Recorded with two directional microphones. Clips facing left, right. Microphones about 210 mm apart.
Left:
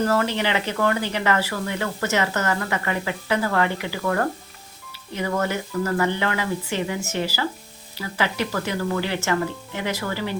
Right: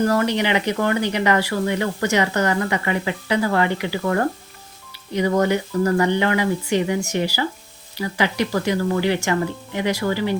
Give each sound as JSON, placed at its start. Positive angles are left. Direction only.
{"t": 0.1, "sound": "speech", "side_deg": -15}